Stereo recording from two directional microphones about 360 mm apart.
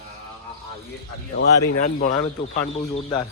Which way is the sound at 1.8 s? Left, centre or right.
Left.